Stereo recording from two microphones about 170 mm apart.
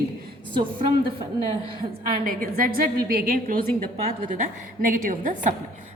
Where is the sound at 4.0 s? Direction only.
35° right (ahead or behind).